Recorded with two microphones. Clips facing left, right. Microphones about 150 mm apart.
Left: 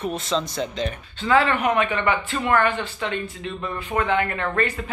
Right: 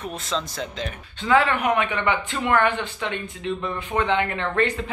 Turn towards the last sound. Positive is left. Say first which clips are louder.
# right 1 dB
turn(degrees=-20)  # may be behind; listen again after turning